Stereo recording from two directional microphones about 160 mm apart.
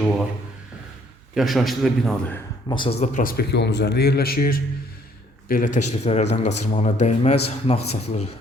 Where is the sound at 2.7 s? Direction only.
30° left (ahead or behind).